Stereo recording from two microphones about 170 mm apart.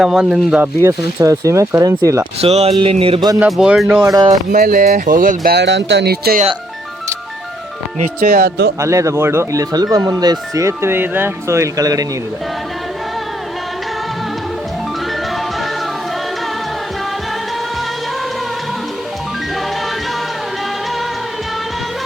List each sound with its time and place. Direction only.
0.0 s speech: 5° right (ahead or behind); by 2.2 s 20° right (ahead or behind)
2.4 s speech: 35° right (ahead or behind)
3.4 s speech: 5° right (ahead or behind)
4.0 s speech: 20° right (ahead or behind)
4.5 s speech: 55° right (ahead or behind)
7.9 s speech: 55° right (ahead or behind); by 8.7 s 75° right (ahead or behind)
8.8 s speech: 15° right (ahead or behind)